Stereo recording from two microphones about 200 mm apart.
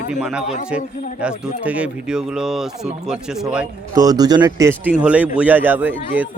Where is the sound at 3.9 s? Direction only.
20° right (ahead or behind).